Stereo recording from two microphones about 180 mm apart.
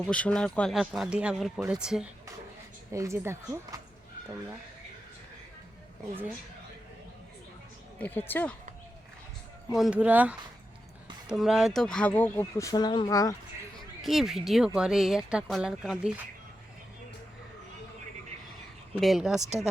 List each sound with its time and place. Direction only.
0.0 s speech: 5° left (ahead or behind)
2.9 s speech: 15° right (ahead or behind)
7.9 s speech: 10° left (ahead or behind)
9.7 s speech: 5° right (ahead or behind); by 13.3 s 20° left (ahead or behind)
14.0 s speech: centre (ahead or behind)
18.9 s speech: centre (ahead or behind)